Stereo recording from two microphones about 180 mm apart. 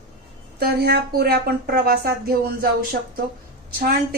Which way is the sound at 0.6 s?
60° right (ahead or behind).